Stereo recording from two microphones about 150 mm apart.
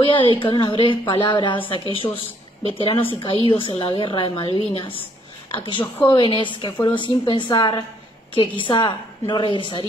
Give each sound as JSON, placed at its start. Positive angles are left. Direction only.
{"t": 0.0, "sound": "a sound", "side_deg": 35}
{"t": 0.4, "sound": "a woman's voice", "side_deg": 30}
{"t": 3.1, "sound": "a woman's voice", "side_deg": 35}